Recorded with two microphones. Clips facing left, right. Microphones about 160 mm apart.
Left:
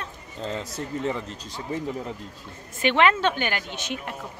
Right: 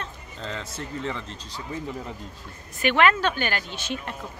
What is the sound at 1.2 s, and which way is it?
Speech, 45° left (ahead or behind).